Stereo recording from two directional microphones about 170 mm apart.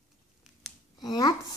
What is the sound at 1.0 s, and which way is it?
Child singing, 25° left (ahead or behind).